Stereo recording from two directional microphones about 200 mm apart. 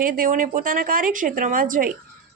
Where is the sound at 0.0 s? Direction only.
45° right (ahead or behind).